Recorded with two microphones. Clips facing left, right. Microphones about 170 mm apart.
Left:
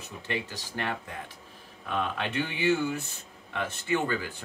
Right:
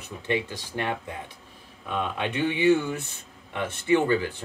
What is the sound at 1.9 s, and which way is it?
Speech, 15° right (ahead or behind).